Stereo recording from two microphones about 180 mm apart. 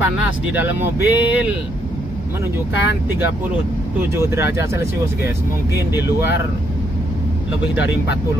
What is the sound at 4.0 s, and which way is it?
Speech, 15° right (ahead or behind).